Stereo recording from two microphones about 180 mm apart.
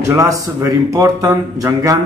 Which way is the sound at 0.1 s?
20° right (ahead or behind).